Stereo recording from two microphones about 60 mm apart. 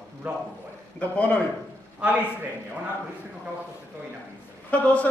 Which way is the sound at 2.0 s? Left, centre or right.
Right.